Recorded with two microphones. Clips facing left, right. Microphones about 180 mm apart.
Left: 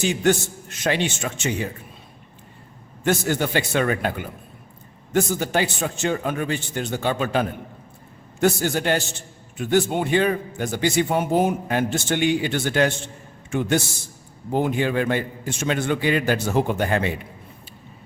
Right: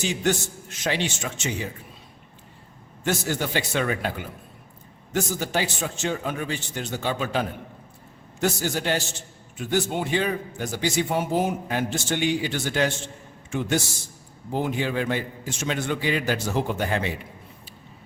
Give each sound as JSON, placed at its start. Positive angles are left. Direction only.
{"t": 0.0, "sound": "a man's voice", "side_deg": 55}
{"t": 3.0, "sound": "a man's voice", "side_deg": 55}